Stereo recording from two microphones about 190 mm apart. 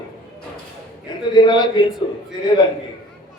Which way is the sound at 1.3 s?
25° left (ahead or behind).